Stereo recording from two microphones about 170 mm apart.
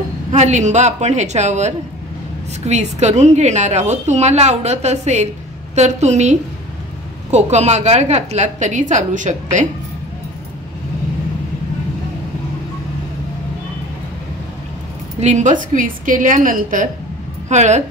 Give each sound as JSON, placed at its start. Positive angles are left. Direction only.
{"t": 0.3, "sound": "a woman's voice", "side_deg": -45}
{"t": 15.1, "sound": "a woman's voice", "side_deg": -45}